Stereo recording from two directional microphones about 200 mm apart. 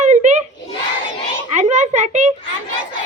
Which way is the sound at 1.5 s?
35° right (ahead or behind).